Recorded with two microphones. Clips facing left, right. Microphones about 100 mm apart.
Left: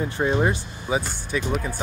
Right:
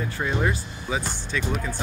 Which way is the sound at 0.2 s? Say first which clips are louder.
Left 4 dB; 25° left (ahead or behind).